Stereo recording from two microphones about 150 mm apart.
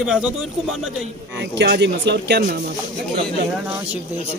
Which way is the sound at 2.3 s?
90° right.